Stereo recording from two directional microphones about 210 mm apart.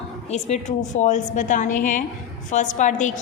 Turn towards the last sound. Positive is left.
turn(degrees=35)  # may be behind; listen again after turning